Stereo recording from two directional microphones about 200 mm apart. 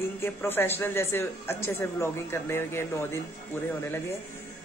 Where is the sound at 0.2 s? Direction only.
10° left (ahead or behind).